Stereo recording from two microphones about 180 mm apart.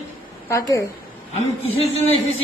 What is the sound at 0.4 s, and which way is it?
Speech, 15° left (ahead or behind).